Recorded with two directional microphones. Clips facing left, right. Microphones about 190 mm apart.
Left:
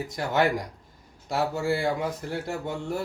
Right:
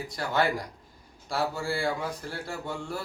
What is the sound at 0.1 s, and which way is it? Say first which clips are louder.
A man's voice: left 3 dB; 20° left (ahead or behind).